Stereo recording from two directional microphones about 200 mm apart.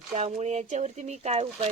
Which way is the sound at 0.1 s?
35° right (ahead or behind).